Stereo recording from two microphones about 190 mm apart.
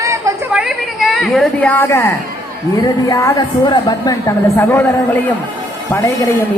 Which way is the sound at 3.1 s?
15° left (ahead or behind).